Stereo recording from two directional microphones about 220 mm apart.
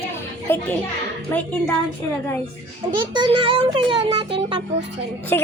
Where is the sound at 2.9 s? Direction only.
20° right (ahead or behind).